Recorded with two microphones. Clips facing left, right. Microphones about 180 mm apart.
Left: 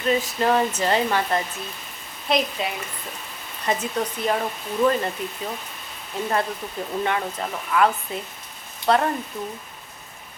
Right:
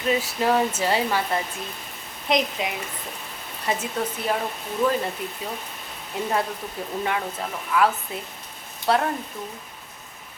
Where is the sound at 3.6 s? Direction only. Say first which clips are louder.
Left 2 dB; 5° right (ahead or behind).